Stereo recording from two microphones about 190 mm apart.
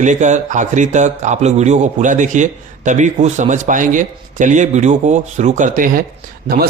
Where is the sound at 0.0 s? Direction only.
40° right (ahead or behind).